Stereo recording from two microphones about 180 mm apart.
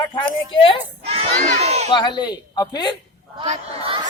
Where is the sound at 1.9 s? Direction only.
25° left (ahead or behind).